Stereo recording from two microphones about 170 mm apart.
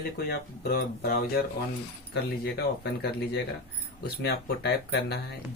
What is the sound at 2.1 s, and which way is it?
Speech, 70° left (ahead or behind).